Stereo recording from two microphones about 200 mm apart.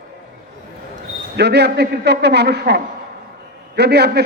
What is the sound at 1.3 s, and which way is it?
A man's voice, 55° right (ahead or behind).